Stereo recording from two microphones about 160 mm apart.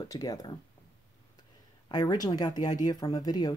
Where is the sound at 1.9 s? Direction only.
25° left (ahead or behind).